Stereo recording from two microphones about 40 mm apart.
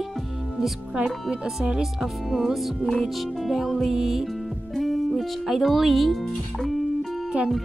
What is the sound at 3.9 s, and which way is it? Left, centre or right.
Music, centre.